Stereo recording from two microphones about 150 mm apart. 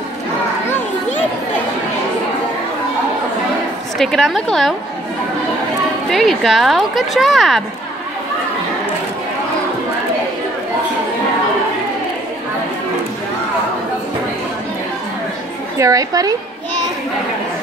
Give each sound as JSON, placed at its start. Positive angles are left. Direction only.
{"t": 0.7, "sound": "children playing", "side_deg": 15}
{"t": 4.0, "sound": "speech", "side_deg": 0}
{"t": 6.0, "sound": "speech", "side_deg": 0}
{"t": 15.8, "sound": "a woman's voice", "side_deg": -25}